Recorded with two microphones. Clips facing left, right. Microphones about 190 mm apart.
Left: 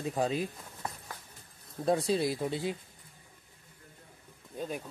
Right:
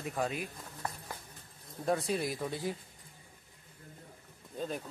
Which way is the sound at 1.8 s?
20° left (ahead or behind).